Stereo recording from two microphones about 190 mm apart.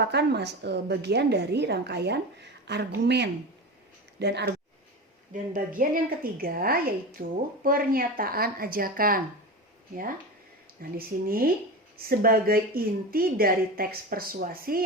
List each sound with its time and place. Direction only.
0.0 s a woman's voice: 60° right (ahead or behind)
5.3 s a woman's voice: 45° right (ahead or behind)
10.8 s a woman's voice: 50° right (ahead or behind)